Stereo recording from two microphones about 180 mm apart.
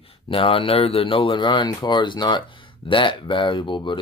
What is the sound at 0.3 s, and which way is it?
Speech, 30° left (ahead or behind).